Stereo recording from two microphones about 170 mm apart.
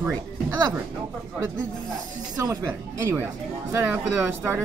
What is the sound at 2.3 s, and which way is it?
Speech, 20° right (ahead or behind).